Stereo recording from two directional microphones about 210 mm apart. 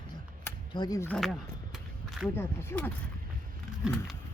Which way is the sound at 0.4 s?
20° left (ahead or behind).